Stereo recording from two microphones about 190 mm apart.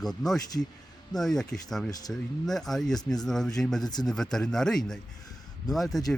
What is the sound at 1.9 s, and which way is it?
Speech, 20° left (ahead or behind).